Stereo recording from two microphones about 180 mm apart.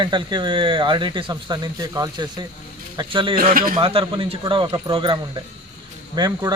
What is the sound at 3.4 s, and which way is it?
Speech, 50° right (ahead or behind).